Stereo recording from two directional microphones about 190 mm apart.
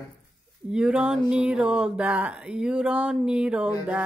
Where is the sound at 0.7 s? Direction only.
5° right (ahead or behind).